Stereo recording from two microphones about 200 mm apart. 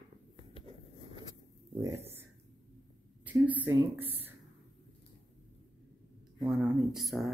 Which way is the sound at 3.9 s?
10° right (ahead or behind).